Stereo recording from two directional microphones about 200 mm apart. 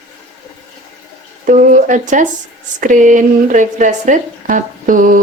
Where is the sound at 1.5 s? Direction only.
40° right (ahead or behind).